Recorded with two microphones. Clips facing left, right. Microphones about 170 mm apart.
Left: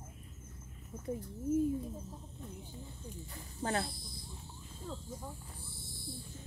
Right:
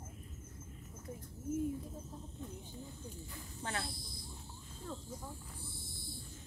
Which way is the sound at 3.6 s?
35° left (ahead or behind).